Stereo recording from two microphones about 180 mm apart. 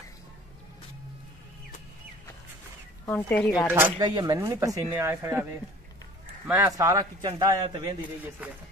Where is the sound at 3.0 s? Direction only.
10° left (ahead or behind).